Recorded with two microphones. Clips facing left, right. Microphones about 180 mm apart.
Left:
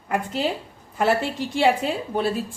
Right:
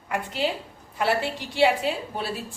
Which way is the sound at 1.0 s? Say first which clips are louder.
Left 3 dB; 45° left (ahead or behind).